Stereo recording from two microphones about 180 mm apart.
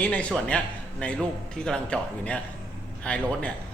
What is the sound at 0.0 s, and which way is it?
A man's voice, 5° left (ahead or behind).